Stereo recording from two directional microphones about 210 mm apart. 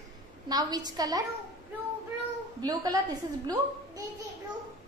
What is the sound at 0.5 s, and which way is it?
Speech, 20° right (ahead or behind).